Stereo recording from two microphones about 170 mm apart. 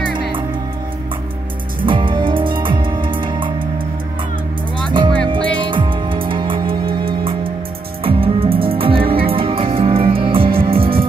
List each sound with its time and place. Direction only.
1.9 s music: 30° right (ahead or behind)
4.9 s music: 30° right (ahead or behind)